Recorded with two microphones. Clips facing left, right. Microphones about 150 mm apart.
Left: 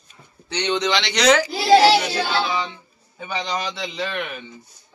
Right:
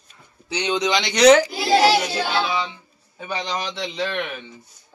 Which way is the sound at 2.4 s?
5° right (ahead or behind).